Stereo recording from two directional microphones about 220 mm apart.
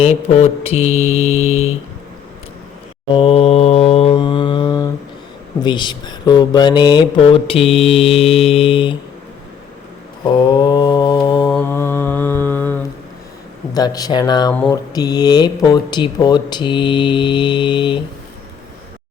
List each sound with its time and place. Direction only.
0.0 s speech: 30° left (ahead or behind)
3.2 s mantra: 25° left (ahead or behind)
5.6 s speech: 20° left (ahead or behind)
10.2 s mantra: 20° left (ahead or behind)
13.7 s speech: 15° left (ahead or behind)
14.5 s mantra: 5° left (ahead or behind)
14.9 s speech: 20° left (ahead or behind)